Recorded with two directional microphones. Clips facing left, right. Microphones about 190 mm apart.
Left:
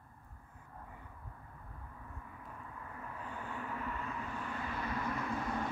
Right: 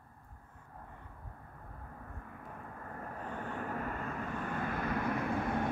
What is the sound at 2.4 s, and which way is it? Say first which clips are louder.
Vehicle: right 2 dB; 50° right (ahead or behind).